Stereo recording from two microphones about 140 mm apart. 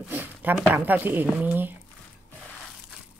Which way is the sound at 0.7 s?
15° right (ahead or behind).